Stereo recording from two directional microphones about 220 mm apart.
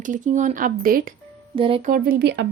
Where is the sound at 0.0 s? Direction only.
35° right (ahead or behind).